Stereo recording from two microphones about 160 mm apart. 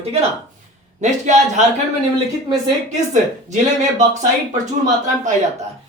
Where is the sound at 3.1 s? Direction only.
50° right (ahead or behind).